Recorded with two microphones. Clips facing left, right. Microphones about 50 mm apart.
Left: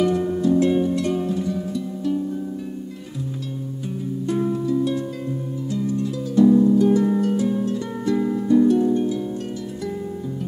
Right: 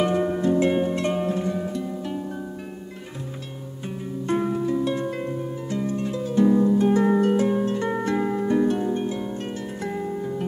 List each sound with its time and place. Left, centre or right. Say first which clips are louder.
0.0 s music: left 2 dB; right
4.3 s music: left 1 dB; right
5.7 s harp: left 3 dB; right